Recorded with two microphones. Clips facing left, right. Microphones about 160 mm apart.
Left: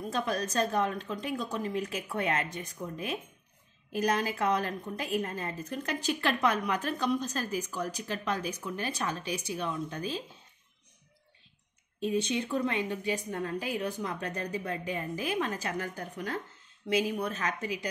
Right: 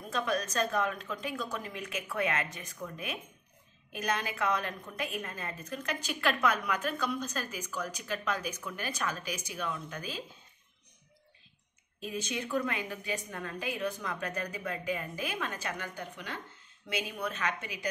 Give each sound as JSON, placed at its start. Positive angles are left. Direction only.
{"t": 0.1, "sound": "a woman's voice", "side_deg": 35}
{"t": 12.0, "sound": "a woman's voice", "side_deg": 30}